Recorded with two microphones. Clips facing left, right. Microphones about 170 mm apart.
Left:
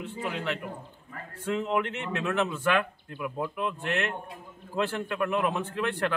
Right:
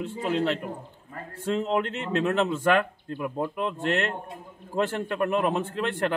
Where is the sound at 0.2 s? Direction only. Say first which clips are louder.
Right 6 dB; 35° right (ahead or behind).